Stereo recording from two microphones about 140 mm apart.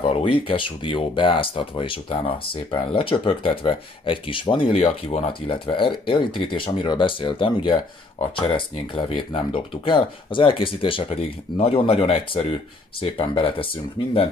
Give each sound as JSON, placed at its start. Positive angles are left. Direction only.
{"t": 0.0, "sound": "speech", "side_deg": 40}